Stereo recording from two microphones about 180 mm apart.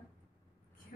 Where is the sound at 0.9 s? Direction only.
50° left (ahead or behind).